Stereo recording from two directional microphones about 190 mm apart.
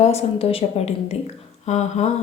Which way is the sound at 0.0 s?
35° left (ahead or behind).